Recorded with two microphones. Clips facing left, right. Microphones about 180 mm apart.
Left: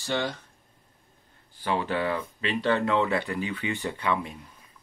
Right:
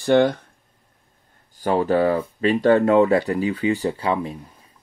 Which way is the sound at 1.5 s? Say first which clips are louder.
Right 9 dB; 40° right (ahead or behind).